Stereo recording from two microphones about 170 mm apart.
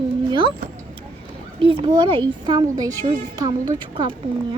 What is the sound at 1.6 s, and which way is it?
A woman's voice, 30° right (ahead or behind).